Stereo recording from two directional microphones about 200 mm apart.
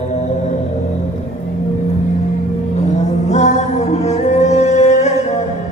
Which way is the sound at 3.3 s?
35° left (ahead or behind).